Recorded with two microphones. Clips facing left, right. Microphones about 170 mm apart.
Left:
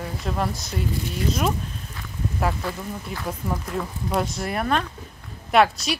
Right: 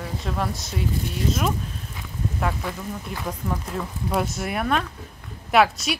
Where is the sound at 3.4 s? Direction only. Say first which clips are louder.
Left 2 dB; centre (ahead or behind).